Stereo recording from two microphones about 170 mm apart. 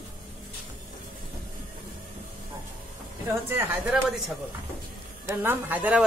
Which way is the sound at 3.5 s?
10° right (ahead or behind).